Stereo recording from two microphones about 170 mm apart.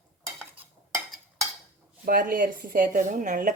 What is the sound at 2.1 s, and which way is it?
Speech, 55° right (ahead or behind).